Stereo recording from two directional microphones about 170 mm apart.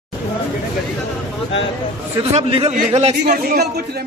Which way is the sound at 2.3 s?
35° right (ahead or behind).